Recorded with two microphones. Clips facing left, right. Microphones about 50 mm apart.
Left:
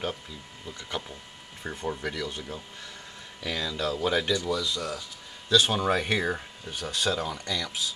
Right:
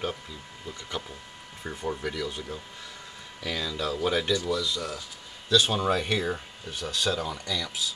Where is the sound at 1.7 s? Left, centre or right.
Centre.